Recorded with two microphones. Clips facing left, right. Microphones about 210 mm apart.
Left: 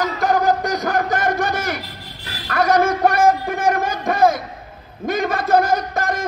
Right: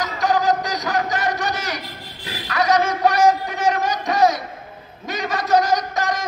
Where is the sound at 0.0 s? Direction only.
55° left (ahead or behind).